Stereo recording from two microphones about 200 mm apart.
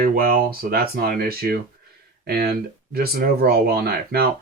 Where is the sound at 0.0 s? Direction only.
45° right (ahead or behind).